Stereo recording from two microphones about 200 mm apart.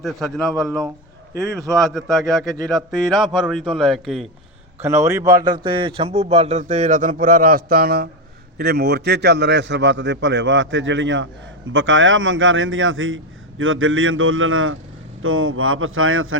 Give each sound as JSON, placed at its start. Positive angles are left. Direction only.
{"t": 0.0, "sound": "a man's voice", "side_deg": 0}
{"t": 0.5, "sound": "speech", "side_deg": -15}
{"t": 1.8, "sound": "a man's voice", "side_deg": 0}
{"t": 4.8, "sound": "a man's voice", "side_deg": -15}